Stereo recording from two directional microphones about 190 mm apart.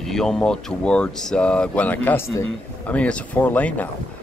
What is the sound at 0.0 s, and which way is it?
Speech, centre (ahead or behind).